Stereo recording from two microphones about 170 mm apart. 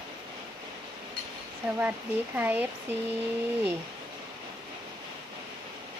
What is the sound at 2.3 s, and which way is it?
Speech, 10° right (ahead or behind).